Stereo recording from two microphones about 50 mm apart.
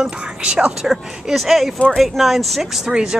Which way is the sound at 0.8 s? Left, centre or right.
Centre.